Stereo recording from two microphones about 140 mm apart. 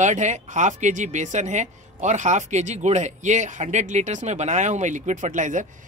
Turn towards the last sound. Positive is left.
turn(degrees=-65)  # may be behind; listen again after turning